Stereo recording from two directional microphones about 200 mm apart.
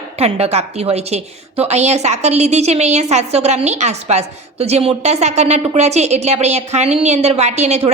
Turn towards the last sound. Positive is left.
turn(degrees=-35)  # may be behind; listen again after turning